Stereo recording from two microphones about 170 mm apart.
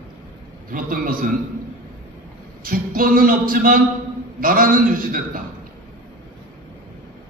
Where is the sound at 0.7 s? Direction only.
55° right (ahead or behind).